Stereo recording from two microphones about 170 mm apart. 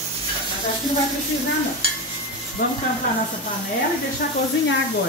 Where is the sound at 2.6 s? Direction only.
55° left (ahead or behind).